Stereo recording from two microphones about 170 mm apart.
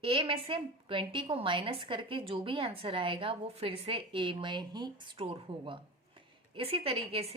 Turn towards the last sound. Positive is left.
turn(degrees=-35)  # may be behind; listen again after turning